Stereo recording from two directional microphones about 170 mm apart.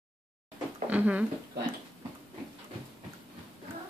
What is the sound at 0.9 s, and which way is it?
Speech, 10° right (ahead or behind).